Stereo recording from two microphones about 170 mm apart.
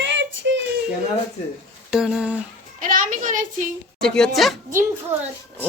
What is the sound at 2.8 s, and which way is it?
Speech, 50° right (ahead or behind).